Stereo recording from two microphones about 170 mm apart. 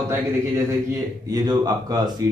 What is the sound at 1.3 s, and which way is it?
Speech, 25° right (ahead or behind).